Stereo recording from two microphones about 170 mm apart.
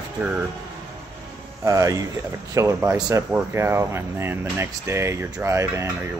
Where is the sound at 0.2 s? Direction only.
10° right (ahead or behind).